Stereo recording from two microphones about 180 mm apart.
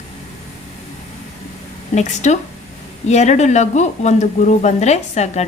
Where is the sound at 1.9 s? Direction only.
40° left (ahead or behind).